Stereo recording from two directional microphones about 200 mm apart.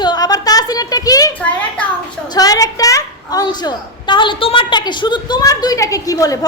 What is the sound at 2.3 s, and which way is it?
A woman's voice, 20° left (ahead or behind).